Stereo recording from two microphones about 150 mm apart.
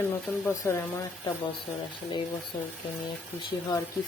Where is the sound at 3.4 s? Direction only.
25° left (ahead or behind).